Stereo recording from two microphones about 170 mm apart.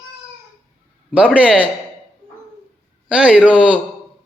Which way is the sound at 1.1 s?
5° right (ahead or behind).